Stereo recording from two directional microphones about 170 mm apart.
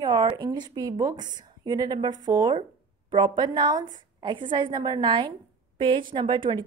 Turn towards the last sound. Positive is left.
turn(degrees=-30)  # may be behind; listen again after turning